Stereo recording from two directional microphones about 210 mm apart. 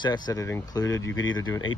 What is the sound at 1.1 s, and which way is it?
Speech, 65° left (ahead or behind).